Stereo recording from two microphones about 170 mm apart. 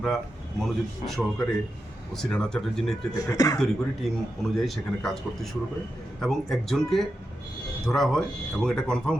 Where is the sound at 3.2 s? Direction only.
20° left (ahead or behind).